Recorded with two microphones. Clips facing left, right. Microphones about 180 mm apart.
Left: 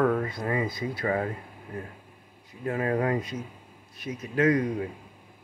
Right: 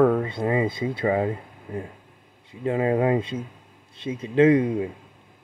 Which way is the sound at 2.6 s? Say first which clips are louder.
Right 5 dB; 20° right (ahead or behind).